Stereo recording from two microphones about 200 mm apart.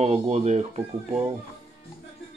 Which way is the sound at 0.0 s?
35° right (ahead or behind).